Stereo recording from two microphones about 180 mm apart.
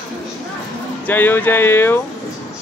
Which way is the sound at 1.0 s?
10° left (ahead or behind).